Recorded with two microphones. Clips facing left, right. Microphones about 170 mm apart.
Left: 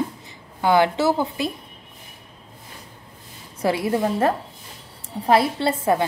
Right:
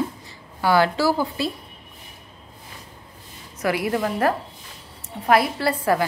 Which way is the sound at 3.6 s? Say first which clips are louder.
Left 2 dB; 25° left (ahead or behind).